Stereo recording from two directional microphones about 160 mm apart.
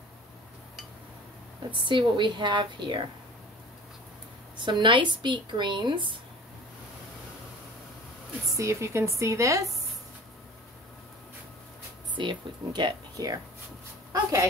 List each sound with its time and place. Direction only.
1.7 s speech: 30° right (ahead or behind)
4.6 s speech: 30° right (ahead or behind)
8.5 s speech: 20° right (ahead or behind)
12.2 s speech: 30° right (ahead or behind)